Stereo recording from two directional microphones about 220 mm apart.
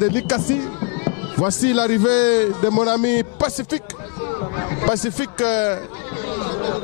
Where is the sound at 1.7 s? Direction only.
10° left (ahead or behind).